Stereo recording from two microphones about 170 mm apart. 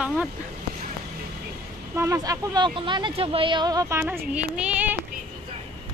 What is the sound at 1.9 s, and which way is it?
Speech, 15° right (ahead or behind).